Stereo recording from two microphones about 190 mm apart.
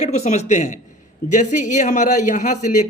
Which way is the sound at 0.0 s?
35° left (ahead or behind).